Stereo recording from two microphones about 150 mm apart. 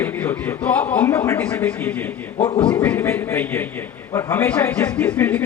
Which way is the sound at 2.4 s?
35° left (ahead or behind).